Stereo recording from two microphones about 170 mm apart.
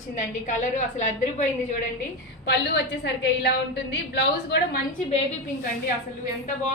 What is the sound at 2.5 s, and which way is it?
A woman's voice, 80° left.